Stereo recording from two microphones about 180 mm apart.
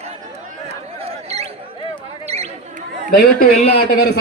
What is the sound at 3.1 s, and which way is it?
Speech, 55° left (ahead or behind).